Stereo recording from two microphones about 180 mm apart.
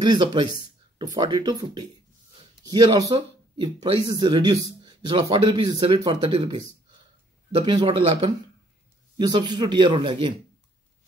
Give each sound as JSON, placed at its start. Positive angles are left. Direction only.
{"t": 0.0, "sound": "speech", "side_deg": -25}
{"t": 7.6, "sound": "speech", "side_deg": -30}